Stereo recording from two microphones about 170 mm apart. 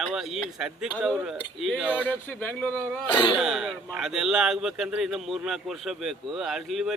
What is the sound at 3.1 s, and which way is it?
Throat clearing, 30° left (ahead or behind).